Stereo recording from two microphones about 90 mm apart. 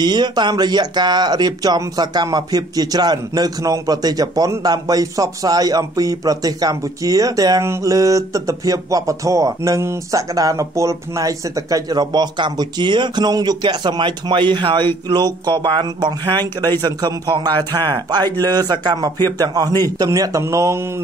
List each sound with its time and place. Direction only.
0.0 s speech: 55° right (ahead or behind)
7.6 s music: 35° right (ahead or behind); by 14.9 s 60° right (ahead or behind)
15.0 s speech: 55° right (ahead or behind)
19.2 s music: 45° right (ahead or behind)